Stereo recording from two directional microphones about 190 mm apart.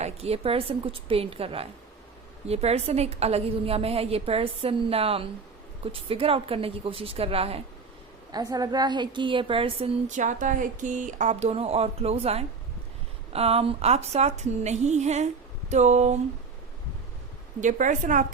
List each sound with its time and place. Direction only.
0.0 s a woman's voice: 30° right (ahead or behind)
8.3 s a woman's voice: 20° right (ahead or behind); by 16.2 s 35° right (ahead or behind)
17.6 s a woman's voice: 40° right (ahead or behind)